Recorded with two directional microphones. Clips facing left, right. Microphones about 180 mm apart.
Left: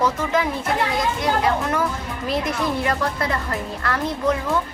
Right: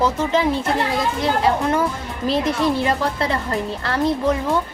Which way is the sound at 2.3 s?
30° right (ahead or behind).